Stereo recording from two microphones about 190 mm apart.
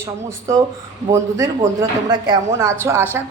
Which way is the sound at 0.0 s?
15° right (ahead or behind).